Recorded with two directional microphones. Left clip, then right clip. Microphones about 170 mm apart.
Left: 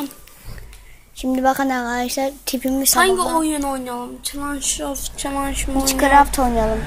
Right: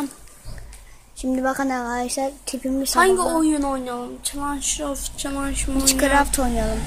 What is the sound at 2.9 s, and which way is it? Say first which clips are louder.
Speech: even; 30° right (ahead or behind).